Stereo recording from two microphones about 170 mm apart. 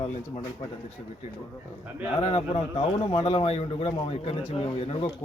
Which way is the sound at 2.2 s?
35° left (ahead or behind).